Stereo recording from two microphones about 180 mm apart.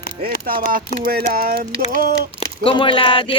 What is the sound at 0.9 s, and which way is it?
Speech, 55° right (ahead or behind).